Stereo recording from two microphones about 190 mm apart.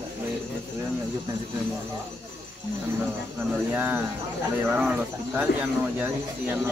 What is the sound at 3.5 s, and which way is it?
Speech, 10° right (ahead or behind).